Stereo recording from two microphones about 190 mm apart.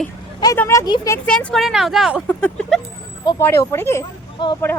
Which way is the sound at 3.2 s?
20° left (ahead or behind).